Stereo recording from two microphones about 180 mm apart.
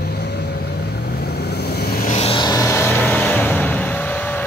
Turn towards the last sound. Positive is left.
turn(degrees=10)  # may be behind; listen again after turning